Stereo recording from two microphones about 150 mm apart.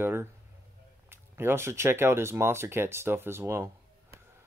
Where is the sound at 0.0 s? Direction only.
15° right (ahead or behind).